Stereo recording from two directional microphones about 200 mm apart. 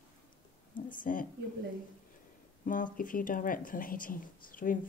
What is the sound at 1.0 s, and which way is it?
Speech, 40° left (ahead or behind).